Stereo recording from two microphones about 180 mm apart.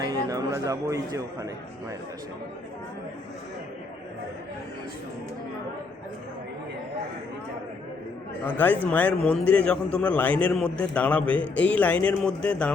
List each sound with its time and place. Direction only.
0.0 s speech: 20° right (ahead or behind)
8.4 s a man's voice: 10° left (ahead or behind)